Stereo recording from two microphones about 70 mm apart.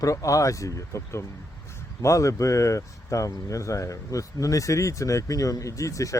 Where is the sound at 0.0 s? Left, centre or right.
Left.